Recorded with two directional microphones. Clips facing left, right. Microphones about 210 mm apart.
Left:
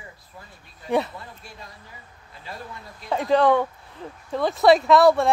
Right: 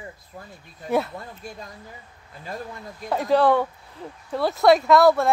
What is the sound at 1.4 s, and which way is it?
Speech, 45° right (ahead or behind).